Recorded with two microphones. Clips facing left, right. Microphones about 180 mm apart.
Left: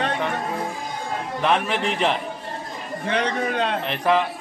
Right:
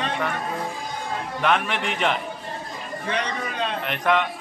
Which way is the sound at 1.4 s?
35° left (ahead or behind).